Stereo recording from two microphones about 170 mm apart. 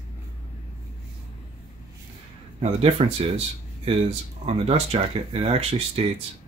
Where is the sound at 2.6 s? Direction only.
35° right (ahead or behind).